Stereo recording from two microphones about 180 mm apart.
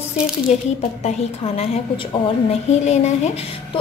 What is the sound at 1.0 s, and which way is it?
A woman's voice, 35° left (ahead or behind).